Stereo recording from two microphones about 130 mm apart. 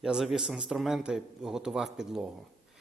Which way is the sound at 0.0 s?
5° right (ahead or behind).